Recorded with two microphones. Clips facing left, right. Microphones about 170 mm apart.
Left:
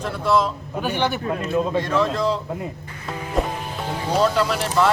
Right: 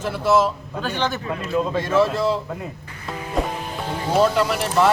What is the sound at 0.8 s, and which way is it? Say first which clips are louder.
Speech: left 2 dB; 15° left (ahead or behind).